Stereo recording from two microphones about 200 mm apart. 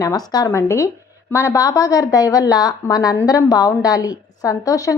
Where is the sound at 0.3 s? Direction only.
20° left (ahead or behind).